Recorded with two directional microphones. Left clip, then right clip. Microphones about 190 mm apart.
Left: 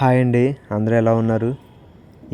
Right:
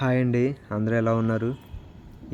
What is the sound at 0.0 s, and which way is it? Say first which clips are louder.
Speech: left 7 dB; 30° left (ahead or behind).